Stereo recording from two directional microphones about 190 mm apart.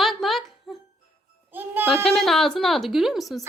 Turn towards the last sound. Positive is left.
turn(degrees=0)  # may be behind; listen again after turning